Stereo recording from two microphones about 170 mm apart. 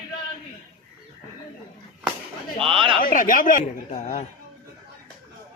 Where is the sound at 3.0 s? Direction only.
55° left (ahead or behind).